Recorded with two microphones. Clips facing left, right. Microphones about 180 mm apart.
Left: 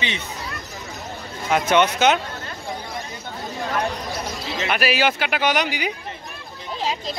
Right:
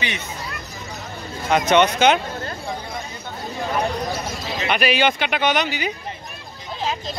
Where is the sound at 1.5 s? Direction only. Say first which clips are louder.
Right 2 dB; 5° left (ahead or behind).